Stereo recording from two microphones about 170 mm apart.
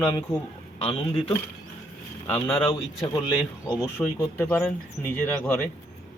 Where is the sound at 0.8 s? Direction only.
30° left (ahead or behind).